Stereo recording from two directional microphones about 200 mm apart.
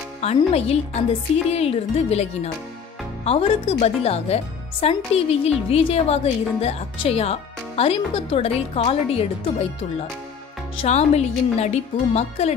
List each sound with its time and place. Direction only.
0.2 s speech: 30° left (ahead or behind)
10.8 s speech: 35° left (ahead or behind)